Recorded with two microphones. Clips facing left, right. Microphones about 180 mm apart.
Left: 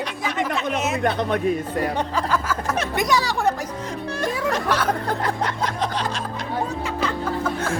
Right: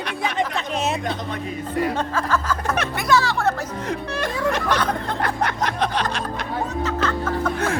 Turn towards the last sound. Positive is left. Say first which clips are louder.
# right 1 dB
turn(degrees=10)  # may be behind; listen again after turning